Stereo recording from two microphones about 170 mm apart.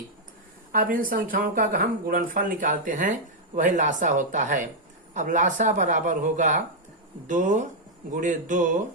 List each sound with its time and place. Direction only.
0.7 s speech: 55° right (ahead or behind)